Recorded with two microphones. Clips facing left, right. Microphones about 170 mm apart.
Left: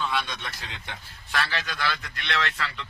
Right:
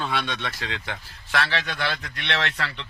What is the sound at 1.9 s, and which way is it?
Speech, 40° right (ahead or behind).